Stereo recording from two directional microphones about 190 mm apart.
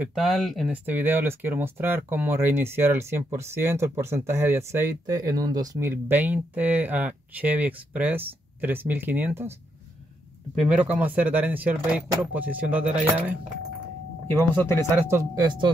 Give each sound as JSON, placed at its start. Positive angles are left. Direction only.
{"t": 0.0, "sound": "speech", "side_deg": 0}
{"t": 10.5, "sound": "speech", "side_deg": -5}
{"t": 14.5, "sound": "speech", "side_deg": 10}
{"t": 15.0, "sound": "speech", "side_deg": -15}